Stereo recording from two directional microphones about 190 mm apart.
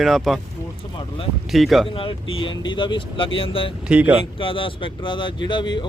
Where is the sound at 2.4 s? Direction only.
25° left (ahead or behind).